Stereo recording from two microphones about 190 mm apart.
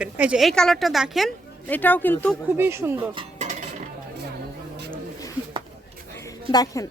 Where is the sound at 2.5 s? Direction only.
10° right (ahead or behind).